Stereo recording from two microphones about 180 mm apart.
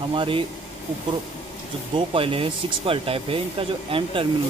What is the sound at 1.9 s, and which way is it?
Speech, 30° right (ahead or behind).